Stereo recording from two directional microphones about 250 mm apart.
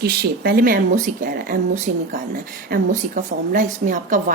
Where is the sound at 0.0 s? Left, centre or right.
Right.